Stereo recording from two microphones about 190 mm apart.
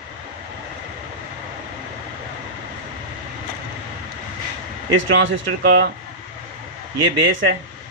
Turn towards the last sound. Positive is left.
turn(degrees=-85)